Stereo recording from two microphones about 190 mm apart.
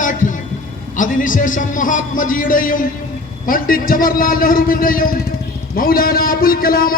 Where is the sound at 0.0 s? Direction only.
45° left (ahead or behind).